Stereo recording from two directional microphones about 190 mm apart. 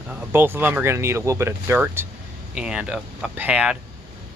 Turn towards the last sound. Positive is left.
turn(degrees=-5)  # may be behind; listen again after turning